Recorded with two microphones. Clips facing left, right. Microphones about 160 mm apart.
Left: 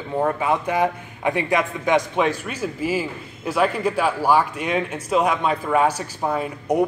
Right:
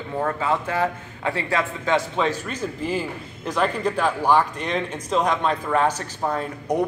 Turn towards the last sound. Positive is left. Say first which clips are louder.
# left 3 dB
turn(degrees=10)  # may be behind; listen again after turning